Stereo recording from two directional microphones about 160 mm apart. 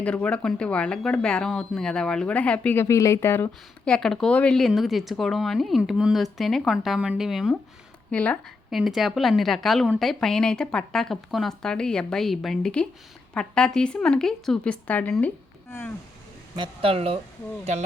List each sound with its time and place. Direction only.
0.0 s speech: 5° left (ahead or behind)
8.1 s a woman's voice: 10° left (ahead or behind)
16.6 s speech: 35° right (ahead or behind)